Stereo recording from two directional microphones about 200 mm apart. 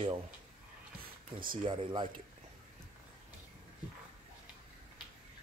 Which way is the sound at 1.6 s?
25° right (ahead or behind).